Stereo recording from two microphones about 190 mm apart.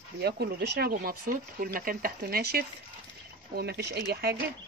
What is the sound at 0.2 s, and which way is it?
A woman's voice, 55° right (ahead or behind).